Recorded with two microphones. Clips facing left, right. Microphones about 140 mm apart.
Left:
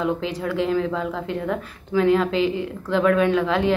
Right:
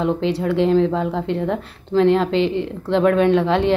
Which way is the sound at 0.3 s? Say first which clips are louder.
Right 6 dB; 35° right (ahead or behind).